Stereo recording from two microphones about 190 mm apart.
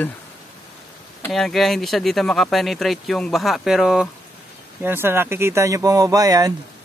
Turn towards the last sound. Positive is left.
turn(degrees=-20)  # may be behind; listen again after turning